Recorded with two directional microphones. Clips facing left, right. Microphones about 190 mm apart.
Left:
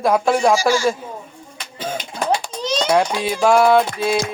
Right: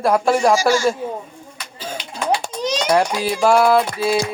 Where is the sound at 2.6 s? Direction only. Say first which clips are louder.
Right 1 dB; 10° right (ahead or behind).